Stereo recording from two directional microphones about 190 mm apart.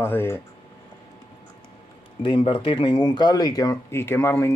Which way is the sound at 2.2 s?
25° left (ahead or behind).